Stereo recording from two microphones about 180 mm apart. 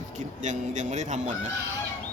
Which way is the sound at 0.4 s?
40° right (ahead or behind).